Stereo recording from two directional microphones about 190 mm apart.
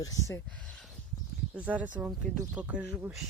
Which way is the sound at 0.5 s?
5° left (ahead or behind).